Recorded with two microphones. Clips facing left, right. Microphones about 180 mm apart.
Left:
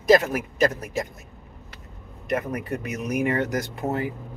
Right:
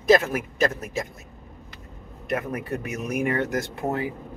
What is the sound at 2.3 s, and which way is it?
Speech, 15° left (ahead or behind).